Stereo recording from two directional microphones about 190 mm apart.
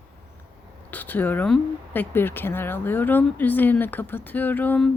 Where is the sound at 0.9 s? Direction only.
10° left (ahead or behind).